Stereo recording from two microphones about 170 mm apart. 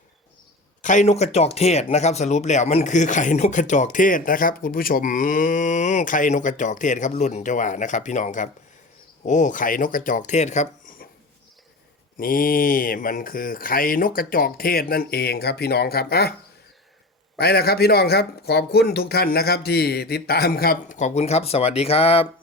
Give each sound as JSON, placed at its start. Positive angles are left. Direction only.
{"t": 0.8, "sound": "speech", "side_deg": 45}
{"t": 12.1, "sound": "speech", "side_deg": 55}
{"t": 17.3, "sound": "speech", "side_deg": 70}